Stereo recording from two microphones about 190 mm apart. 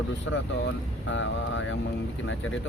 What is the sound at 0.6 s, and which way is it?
Speech, 80° left.